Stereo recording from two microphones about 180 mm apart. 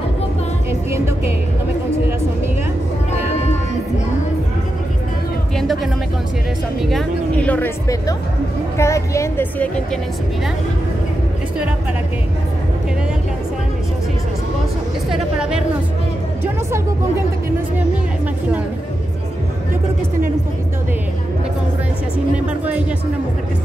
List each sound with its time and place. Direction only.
6.8 s a woman's voice: centre (ahead or behind)
15.0 s a woman's voice: 5° right (ahead or behind)
22.5 s speech: 5° right (ahead or behind)